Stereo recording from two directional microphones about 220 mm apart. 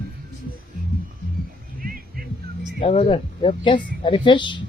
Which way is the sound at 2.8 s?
30° left (ahead or behind).